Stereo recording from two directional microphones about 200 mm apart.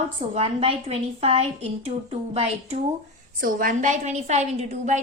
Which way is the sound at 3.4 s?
45° right (ahead or behind).